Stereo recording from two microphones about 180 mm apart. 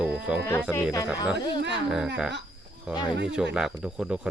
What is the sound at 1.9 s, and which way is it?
Speech, 5° right (ahead or behind).